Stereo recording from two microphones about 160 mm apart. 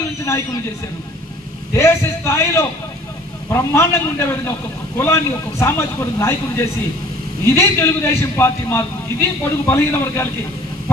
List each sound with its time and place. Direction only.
0.2 s a man's voice: 20° left (ahead or behind)
1.7 s a man's voice: 15° left (ahead or behind)